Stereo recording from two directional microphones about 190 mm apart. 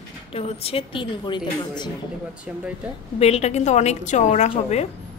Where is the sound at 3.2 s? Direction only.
35° left (ahead or behind).